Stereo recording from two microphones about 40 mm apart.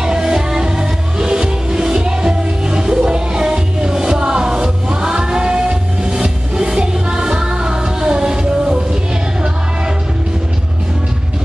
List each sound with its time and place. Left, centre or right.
0.0 s music: centre